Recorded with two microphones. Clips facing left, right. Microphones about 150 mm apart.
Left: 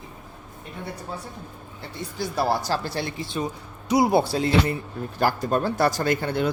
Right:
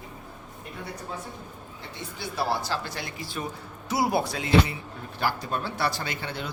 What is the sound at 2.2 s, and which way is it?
Speech, 40° left (ahead or behind).